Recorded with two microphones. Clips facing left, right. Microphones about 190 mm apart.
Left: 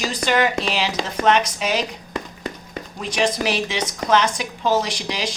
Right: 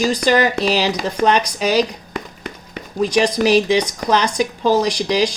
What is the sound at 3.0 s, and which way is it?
Speech, 40° right (ahead or behind).